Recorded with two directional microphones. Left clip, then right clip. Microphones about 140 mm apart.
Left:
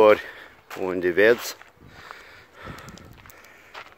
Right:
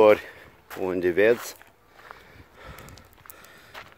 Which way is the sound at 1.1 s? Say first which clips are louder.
Left 4 dB; centre (ahead or behind).